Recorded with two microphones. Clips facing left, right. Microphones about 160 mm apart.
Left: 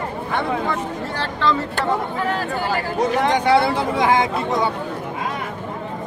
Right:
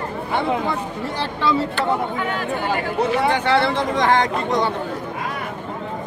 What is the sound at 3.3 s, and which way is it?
Speech, 10° left (ahead or behind).